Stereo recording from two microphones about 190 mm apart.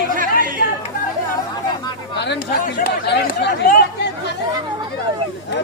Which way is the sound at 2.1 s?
65° left (ahead or behind).